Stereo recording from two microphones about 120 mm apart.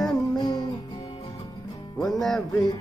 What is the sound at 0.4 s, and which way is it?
Music, 35° left (ahead or behind).